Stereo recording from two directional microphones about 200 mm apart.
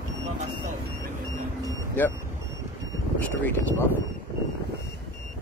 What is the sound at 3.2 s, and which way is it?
Speech, 10° left (ahead or behind).